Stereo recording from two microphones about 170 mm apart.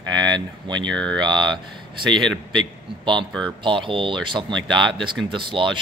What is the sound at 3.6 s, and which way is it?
Speech, 30° right (ahead or behind).